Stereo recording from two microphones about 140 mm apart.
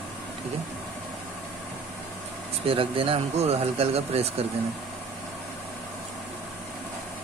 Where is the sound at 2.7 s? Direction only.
40° right (ahead or behind).